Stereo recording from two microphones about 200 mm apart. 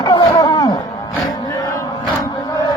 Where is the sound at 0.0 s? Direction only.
20° left (ahead or behind).